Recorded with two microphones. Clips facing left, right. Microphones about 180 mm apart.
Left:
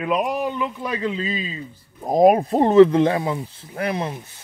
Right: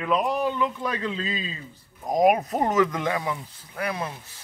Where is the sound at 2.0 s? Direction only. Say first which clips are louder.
Left 5 dB; 30° left (ahead or behind).